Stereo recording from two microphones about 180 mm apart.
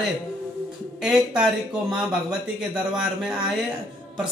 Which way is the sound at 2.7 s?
5° right (ahead or behind).